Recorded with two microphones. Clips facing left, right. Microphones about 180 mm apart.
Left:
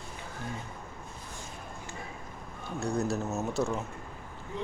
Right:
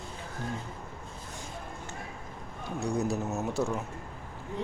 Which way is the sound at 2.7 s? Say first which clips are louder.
Even; 15° right (ahead or behind).